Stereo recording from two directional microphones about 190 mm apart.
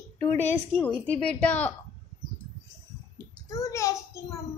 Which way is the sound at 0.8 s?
5° left (ahead or behind).